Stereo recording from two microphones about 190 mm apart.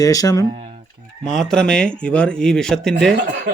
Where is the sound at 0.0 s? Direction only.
20° left (ahead or behind).